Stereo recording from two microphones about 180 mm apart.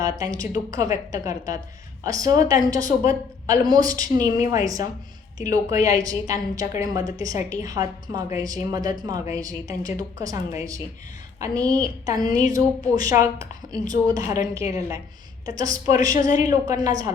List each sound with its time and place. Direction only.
0.0 s a woman's voice: 20° right (ahead or behind)